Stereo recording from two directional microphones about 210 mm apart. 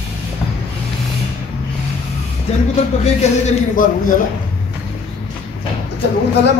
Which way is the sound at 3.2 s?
30° left (ahead or behind).